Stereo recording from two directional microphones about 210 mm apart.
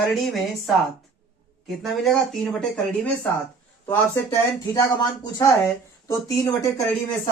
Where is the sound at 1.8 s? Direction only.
Centre (ahead or behind).